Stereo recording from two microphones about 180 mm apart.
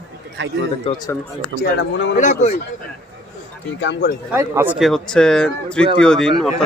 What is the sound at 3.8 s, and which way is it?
Speech, 70° left (ahead or behind).